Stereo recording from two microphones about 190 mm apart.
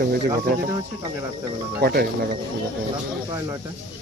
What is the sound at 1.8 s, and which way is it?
Speech, 55° right (ahead or behind).